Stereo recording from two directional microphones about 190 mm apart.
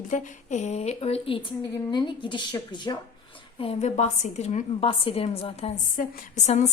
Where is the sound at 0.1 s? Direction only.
40° left (ahead or behind); by 3.0 s 25° left (ahead or behind).